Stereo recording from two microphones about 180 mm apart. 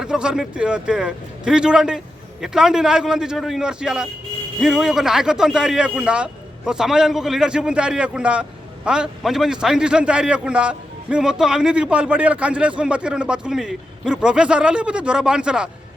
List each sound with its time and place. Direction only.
0.0 s a man's voice: 5° right (ahead or behind)